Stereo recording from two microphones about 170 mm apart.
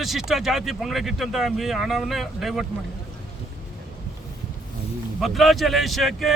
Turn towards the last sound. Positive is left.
turn(degrees=0)  # may be behind; listen again after turning